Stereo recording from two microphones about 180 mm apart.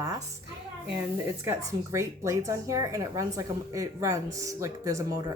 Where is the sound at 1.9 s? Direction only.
15° right (ahead or behind).